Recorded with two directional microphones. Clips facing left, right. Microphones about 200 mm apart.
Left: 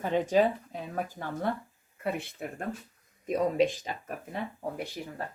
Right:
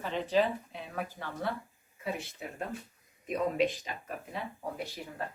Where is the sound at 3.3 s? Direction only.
45° left (ahead or behind).